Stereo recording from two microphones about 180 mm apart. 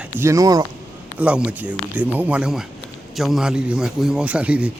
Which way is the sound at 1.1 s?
5° right (ahead or behind).